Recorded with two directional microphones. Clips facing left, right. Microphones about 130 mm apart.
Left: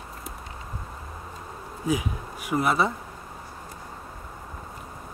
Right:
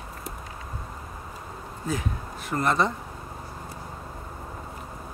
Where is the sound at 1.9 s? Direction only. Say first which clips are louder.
Left 3 dB; 10° left (ahead or behind).